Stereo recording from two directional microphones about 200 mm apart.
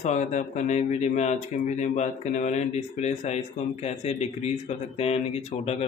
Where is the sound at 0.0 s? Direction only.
35° left (ahead or behind).